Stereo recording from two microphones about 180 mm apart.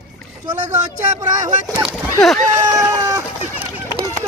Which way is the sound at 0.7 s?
40° right (ahead or behind).